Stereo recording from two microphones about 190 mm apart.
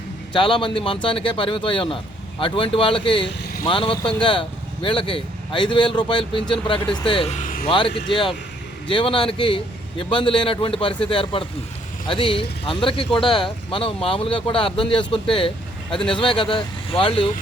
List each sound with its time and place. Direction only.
0.3 s speech: 25° left (ahead or behind); by 7.7 s 45° left (ahead or behind)
7.7 s speech: 25° left (ahead or behind)